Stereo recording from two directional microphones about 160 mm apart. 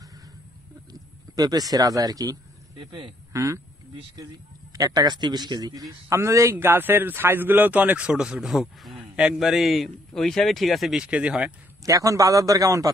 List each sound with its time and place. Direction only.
1.3 s a man's voice: 25° right (ahead or behind)
3.3 s a man's voice: 20° right (ahead or behind)
4.7 s speech: 25° right (ahead or behind); by 11.5 s 5° right (ahead or behind)
11.8 s a man's voice: 20° right (ahead or behind)